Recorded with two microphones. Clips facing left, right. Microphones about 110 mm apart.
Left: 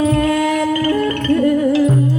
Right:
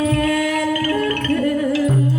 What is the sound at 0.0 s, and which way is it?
Music, 25° left (ahead or behind).